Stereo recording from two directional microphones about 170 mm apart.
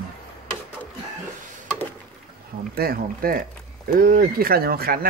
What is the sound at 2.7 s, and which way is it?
Speech, 60° right (ahead or behind).